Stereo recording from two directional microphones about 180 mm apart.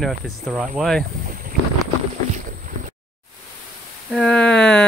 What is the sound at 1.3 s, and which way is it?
Boat, 50° right (ahead or behind).